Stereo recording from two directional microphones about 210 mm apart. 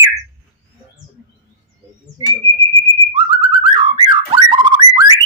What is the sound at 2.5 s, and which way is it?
Whistle, 15° left (ahead or behind).